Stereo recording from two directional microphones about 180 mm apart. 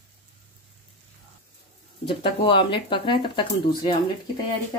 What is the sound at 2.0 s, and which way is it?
Speech, 30° left (ahead or behind).